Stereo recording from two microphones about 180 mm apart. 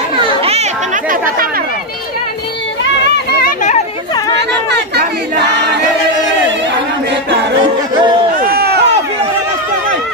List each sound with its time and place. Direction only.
0.4 s chatter: 35° right (ahead or behind)
4.4 s chatter: 70° right (ahead or behind)
7.9 s a sound: 25° right (ahead or behind)
8.4 s run: 60° right (ahead or behind)